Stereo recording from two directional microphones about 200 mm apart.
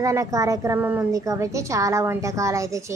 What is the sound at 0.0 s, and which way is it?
A woman's voice, 15° right (ahead or behind).